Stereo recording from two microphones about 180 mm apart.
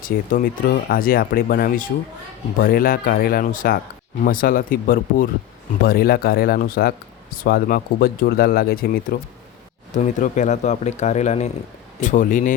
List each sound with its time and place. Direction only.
0.0 s speech: 50° left (ahead or behind)
9.9 s speech: 45° left (ahead or behind)